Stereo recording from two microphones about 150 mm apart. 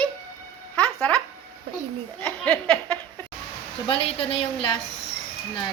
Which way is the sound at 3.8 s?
35° left (ahead or behind).